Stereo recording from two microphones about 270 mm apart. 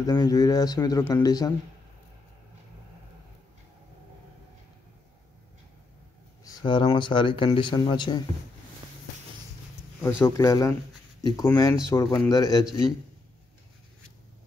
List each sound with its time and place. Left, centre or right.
0.0 s speech: centre
6.4 s speech: centre
10.2 s speech: centre